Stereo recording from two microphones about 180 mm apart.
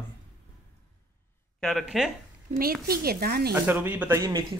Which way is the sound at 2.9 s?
60° right (ahead or behind).